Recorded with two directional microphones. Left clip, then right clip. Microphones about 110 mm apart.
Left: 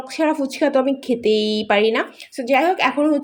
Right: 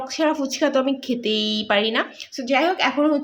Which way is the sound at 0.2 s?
30° left (ahead or behind).